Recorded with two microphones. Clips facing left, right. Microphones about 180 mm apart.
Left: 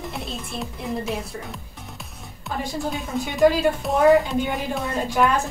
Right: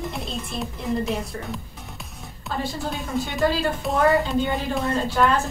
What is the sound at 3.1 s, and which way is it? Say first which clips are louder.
Speech: left 5 dB; centre (ahead or behind).